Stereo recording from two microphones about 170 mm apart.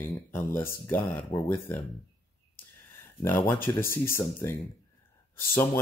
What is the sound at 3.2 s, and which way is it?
Speech, 10° left (ahead or behind).